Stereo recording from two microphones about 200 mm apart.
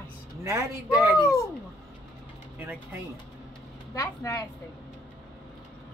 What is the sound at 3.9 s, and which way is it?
Speech, 15° left (ahead or behind).